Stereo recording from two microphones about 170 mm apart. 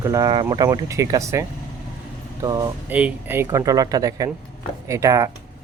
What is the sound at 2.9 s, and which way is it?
Speech, 10° right (ahead or behind).